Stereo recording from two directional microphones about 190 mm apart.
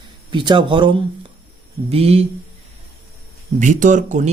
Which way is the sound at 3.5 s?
40° right (ahead or behind).